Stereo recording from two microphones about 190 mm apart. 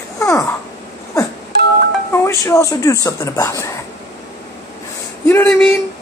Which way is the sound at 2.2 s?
15° left (ahead or behind).